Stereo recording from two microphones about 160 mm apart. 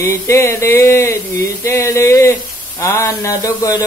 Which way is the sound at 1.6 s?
15° left (ahead or behind).